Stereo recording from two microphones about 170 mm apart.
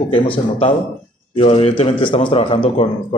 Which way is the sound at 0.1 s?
30° left (ahead or behind).